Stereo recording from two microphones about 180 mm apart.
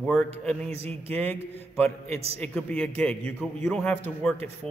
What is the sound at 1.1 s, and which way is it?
Speech, 10° left (ahead or behind).